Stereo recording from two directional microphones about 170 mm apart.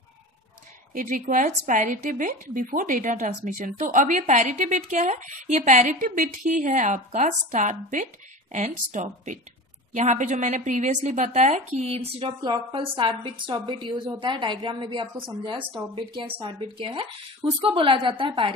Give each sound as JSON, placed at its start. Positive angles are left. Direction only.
{"t": 0.9, "sound": "a woman's voice", "side_deg": -55}